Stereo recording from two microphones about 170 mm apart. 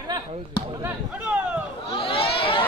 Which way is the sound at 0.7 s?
10° right (ahead or behind).